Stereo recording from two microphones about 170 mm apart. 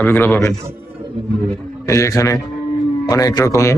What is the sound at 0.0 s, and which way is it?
Speech, 10° left (ahead or behind).